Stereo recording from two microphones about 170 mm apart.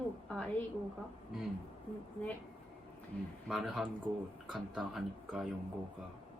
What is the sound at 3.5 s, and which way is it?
Speech, centre (ahead or behind).